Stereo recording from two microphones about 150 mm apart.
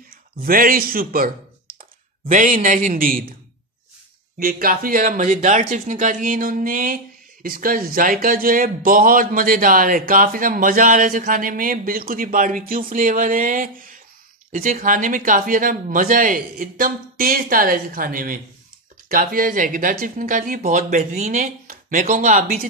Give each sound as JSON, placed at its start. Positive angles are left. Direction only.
{"t": 0.1, "sound": "a man's voice", "side_deg": -75}
{"t": 1.8, "sound": "speech", "side_deg": -65}
{"t": 4.4, "sound": "speech", "side_deg": -70}